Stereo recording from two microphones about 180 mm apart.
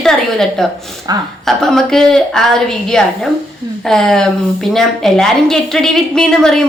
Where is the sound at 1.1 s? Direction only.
20° right (ahead or behind).